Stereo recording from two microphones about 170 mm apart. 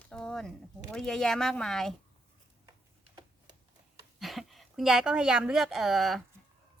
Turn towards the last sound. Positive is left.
turn(degrees=0)  # may be behind; listen again after turning